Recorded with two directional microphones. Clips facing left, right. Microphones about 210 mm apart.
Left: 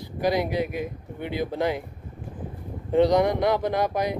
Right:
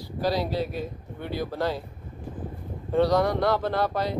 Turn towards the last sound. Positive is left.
turn(degrees=15)  # may be behind; listen again after turning